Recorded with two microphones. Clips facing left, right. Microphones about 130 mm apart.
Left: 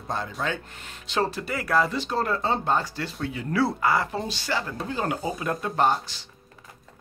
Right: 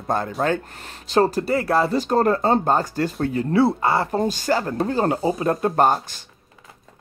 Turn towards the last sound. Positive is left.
turn(degrees=-50)  # may be behind; listen again after turning